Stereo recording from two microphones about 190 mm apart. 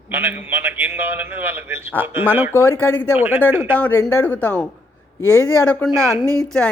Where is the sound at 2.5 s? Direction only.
10° left (ahead or behind).